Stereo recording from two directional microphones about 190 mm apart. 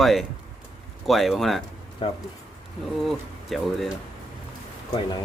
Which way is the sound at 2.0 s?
25° left (ahead or behind).